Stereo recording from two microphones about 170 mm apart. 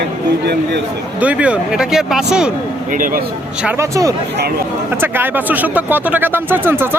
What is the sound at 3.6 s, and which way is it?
Speech, 20° right (ahead or behind).